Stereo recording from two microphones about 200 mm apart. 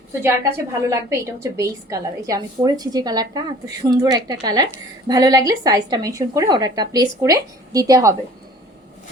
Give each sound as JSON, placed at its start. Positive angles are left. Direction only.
{"t": 0.2, "sound": "a woman's voice", "side_deg": -10}